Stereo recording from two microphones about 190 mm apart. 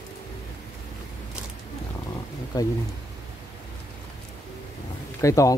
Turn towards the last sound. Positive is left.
turn(degrees=15)  # may be behind; listen again after turning